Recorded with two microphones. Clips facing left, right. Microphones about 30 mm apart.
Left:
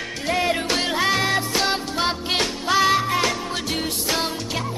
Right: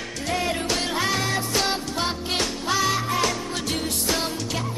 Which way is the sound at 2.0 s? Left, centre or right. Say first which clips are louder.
Left 4 dB; left.